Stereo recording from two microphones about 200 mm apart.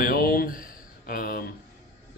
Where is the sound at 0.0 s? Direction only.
50° left (ahead or behind).